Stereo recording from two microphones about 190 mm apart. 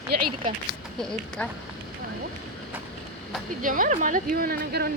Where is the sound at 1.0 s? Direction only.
5° left (ahead or behind).